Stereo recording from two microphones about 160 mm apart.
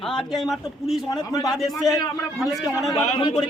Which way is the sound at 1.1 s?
25° left (ahead or behind).